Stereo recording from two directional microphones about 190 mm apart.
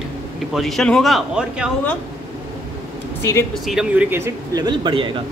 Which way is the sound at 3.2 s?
15° left (ahead or behind).